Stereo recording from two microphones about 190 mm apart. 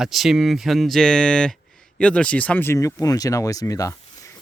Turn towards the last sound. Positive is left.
turn(degrees=20)  # may be behind; listen again after turning